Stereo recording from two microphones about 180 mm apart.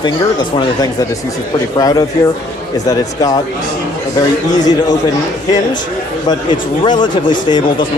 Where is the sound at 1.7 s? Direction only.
20° left (ahead or behind).